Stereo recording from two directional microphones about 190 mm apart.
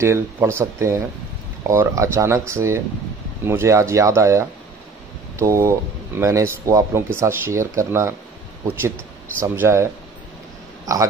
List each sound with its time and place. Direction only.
0.0 s speech: 15° right (ahead or behind)
9.4 s speech: 15° right (ahead or behind)
10.9 s speech: 15° right (ahead or behind)